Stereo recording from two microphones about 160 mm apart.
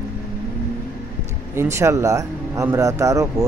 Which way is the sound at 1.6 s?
15° right (ahead or behind).